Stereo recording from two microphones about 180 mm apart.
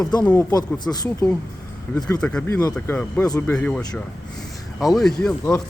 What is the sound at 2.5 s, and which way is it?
Speech, 20° left (ahead or behind).